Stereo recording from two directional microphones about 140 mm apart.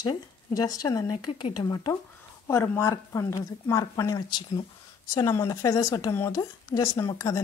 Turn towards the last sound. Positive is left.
turn(degrees=25)  # may be behind; listen again after turning